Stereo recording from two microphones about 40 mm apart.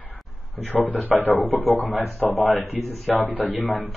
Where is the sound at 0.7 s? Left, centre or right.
Left.